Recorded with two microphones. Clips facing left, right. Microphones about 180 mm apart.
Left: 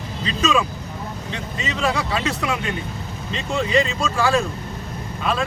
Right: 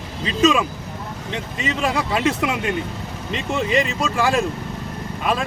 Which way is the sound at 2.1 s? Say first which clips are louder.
Right 3 dB; 15° right (ahead or behind).